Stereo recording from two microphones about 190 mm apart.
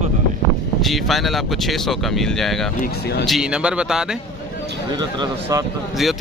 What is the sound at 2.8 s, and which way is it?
Speech, 55° left (ahead or behind).